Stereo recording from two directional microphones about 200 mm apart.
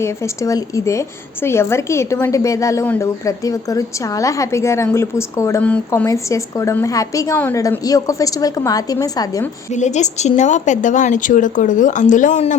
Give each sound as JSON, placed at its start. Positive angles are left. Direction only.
{"t": 0.0, "sound": "a woman's voice", "side_deg": 15}
{"t": 9.7, "sound": "a woman's voice", "side_deg": 35}